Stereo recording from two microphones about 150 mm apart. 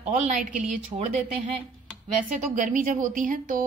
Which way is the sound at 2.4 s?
60° right (ahead or behind).